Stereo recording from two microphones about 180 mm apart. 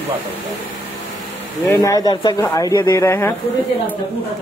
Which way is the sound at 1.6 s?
15° left (ahead or behind).